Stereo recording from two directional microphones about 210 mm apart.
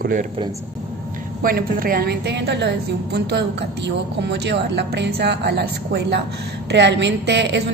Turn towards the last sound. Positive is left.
turn(degrees=-55)  # may be behind; listen again after turning